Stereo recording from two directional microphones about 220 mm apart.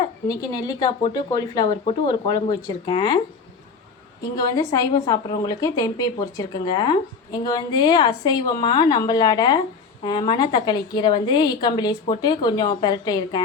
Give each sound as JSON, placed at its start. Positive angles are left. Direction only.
{"t": 0.3, "sound": "a woman's voice", "side_deg": 15}
{"t": 4.2, "sound": "a woman's voice", "side_deg": 15}